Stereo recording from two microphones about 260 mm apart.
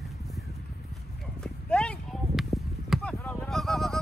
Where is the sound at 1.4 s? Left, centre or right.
Centre.